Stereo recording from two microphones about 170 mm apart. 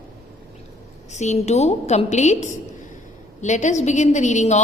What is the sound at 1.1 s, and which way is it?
A woman's voice, 45° left (ahead or behind).